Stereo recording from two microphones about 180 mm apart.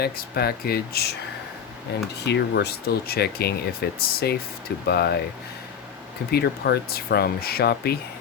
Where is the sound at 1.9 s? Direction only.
70° left (ahead or behind).